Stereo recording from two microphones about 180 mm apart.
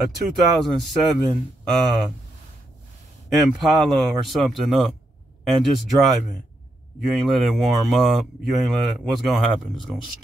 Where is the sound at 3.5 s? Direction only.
Centre (ahead or behind).